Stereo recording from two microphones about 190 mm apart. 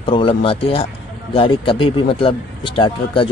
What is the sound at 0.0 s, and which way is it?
Speech, 25° left (ahead or behind).